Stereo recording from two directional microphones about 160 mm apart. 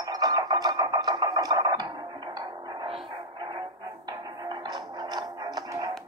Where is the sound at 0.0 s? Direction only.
25° right (ahead or behind).